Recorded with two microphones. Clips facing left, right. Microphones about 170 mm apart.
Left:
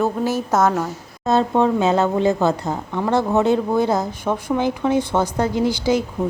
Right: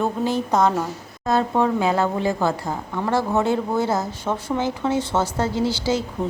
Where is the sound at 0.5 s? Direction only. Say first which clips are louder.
Left 2 dB; 5° left (ahead or behind).